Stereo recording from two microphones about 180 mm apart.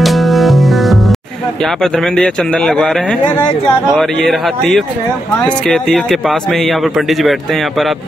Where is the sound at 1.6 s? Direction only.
Centre (ahead or behind).